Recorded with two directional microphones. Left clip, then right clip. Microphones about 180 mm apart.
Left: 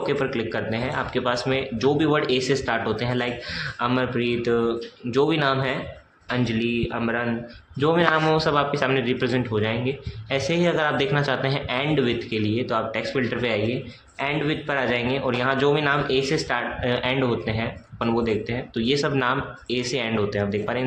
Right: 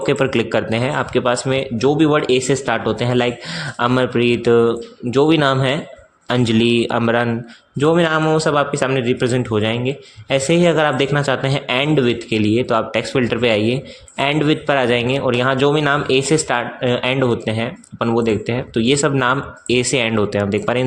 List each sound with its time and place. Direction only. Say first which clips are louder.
0.0 s a man's voice: right 7 dB; 50° right (ahead or behind)
7.8 s a man's voice: right 5 dB; 45° right (ahead or behind)